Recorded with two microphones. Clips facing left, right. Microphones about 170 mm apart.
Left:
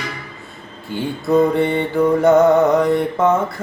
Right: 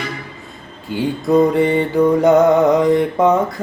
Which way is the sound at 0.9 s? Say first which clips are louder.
Right 2 dB; 15° right (ahead or behind).